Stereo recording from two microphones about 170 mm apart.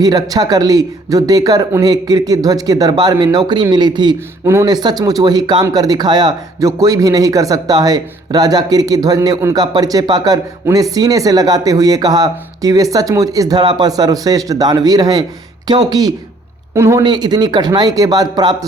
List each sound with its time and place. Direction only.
0.0 s speech: 20° right (ahead or behind)